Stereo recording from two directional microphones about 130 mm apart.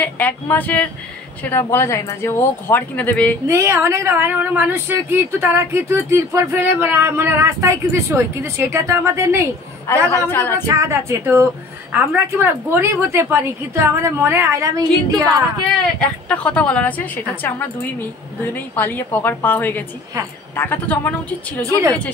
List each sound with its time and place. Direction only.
0.0 s a woman's voice: 15° left (ahead or behind)
3.4 s speech: 20° right (ahead or behind)
10.1 s a woman's voice: 15° left (ahead or behind)
10.7 s speech: 20° right (ahead or behind)
16.3 s a woman's voice: 10° left (ahead or behind)